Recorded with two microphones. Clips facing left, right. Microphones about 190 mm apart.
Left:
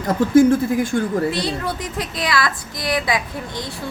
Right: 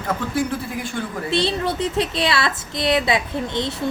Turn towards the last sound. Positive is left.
turn(degrees=-25)  # may be behind; listen again after turning